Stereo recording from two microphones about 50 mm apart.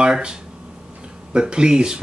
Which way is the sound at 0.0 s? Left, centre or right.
Centre.